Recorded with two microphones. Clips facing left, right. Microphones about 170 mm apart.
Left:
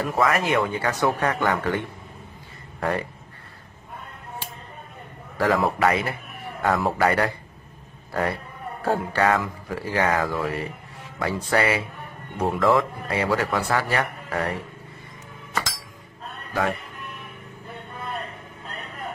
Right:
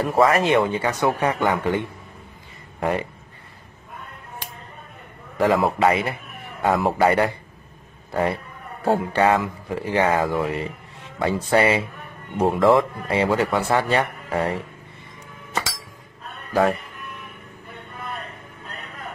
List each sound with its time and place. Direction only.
0.0 s speech: 30° right (ahead or behind)
5.4 s a man's voice: 20° right (ahead or behind)